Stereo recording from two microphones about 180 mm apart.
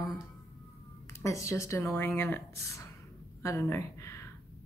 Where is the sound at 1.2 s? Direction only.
15° left (ahead or behind).